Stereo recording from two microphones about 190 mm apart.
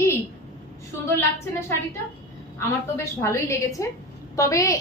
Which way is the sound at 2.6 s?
15° left (ahead or behind).